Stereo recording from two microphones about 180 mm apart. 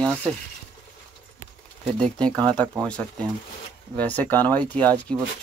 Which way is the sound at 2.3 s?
25° right (ahead or behind).